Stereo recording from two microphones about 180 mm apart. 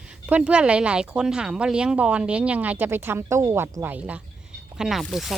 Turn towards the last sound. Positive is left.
turn(degrees=0)  # may be behind; listen again after turning